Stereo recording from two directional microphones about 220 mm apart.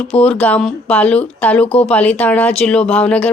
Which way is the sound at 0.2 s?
5° left (ahead or behind).